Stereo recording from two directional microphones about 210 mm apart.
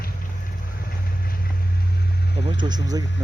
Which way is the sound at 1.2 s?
45° left (ahead or behind).